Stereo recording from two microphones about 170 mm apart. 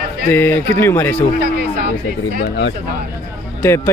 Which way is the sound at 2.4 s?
90° left.